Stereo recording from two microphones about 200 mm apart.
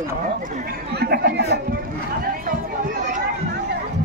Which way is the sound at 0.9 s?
50° right (ahead or behind).